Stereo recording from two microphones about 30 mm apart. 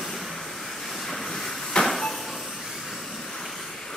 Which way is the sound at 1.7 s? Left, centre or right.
Left.